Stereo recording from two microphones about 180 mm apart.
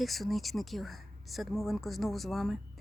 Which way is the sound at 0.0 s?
Centre (ahead or behind).